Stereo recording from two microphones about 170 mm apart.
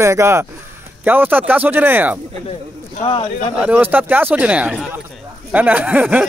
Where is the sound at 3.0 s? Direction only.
30° left (ahead or behind).